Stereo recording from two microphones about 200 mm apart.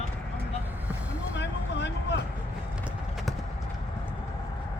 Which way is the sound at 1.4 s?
60° left (ahead or behind).